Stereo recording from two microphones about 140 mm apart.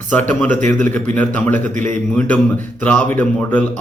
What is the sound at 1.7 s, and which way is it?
Speech, 60° right (ahead or behind).